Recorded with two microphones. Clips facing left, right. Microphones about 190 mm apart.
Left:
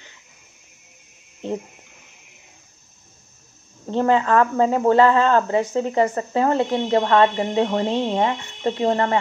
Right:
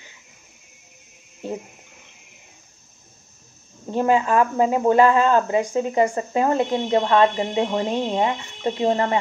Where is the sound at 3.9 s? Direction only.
15° right (ahead or behind).